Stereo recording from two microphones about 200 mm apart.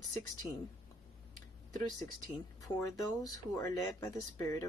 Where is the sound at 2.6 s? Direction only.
20° left (ahead or behind).